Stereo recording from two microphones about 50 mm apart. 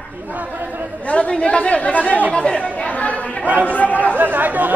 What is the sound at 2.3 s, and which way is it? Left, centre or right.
Chatter, centre.